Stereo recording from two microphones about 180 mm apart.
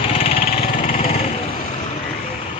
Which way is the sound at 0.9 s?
35° left (ahead or behind).